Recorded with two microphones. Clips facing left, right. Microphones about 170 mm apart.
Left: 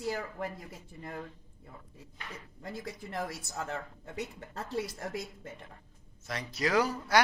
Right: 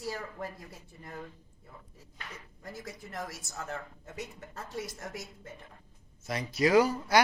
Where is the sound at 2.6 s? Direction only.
25° left (ahead or behind).